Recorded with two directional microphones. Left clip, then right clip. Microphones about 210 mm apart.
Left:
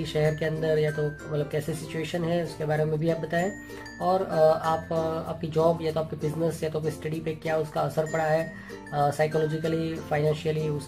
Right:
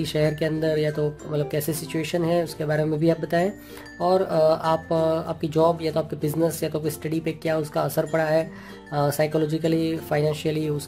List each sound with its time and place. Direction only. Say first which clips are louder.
0.0 s speech: right 3 dB; 45° right (ahead or behind)